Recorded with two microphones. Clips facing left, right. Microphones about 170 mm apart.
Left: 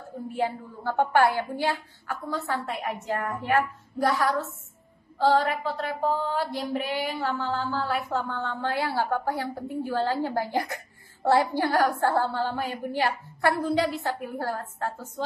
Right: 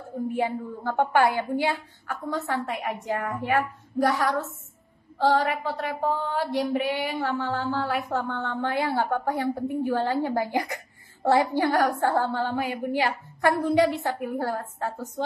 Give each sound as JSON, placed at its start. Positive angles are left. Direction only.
{"t": 0.4, "sound": "a woman's voice", "side_deg": -15}